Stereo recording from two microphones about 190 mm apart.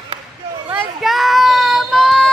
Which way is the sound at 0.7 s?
Centre (ahead or behind).